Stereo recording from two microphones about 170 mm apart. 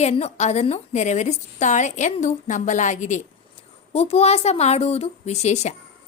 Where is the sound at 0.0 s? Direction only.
40° left (ahead or behind).